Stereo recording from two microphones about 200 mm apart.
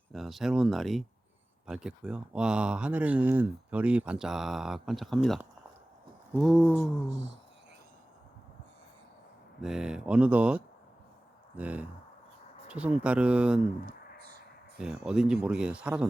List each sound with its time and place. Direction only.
0.1 s speech: centre (ahead or behind)
9.6 s speech: centre (ahead or behind)
13.8 s a sound: 50° right (ahead or behind)
15.0 s speech: 5° right (ahead or behind)